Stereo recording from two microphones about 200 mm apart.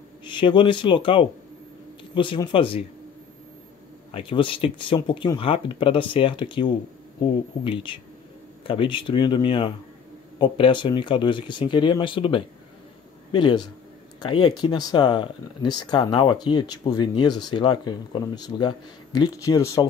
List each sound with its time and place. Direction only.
0.2 s speech: 25° left (ahead or behind)
4.1 s speech: 25° left (ahead or behind)